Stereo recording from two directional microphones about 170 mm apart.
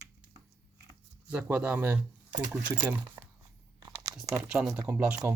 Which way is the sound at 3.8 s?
20° right (ahead or behind).